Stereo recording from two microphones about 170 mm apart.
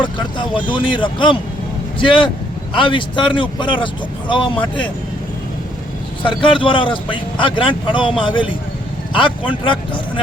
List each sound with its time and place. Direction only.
0.0 s a man's voice: 30° left (ahead or behind)
6.2 s a man's voice: 30° left (ahead or behind)